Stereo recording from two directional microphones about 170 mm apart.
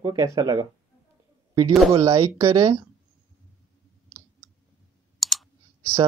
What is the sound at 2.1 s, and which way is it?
Speech, 20° right (ahead or behind).